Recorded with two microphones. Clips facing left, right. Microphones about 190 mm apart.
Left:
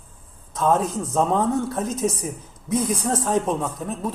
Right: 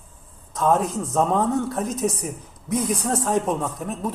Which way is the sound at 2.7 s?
10° right (ahead or behind).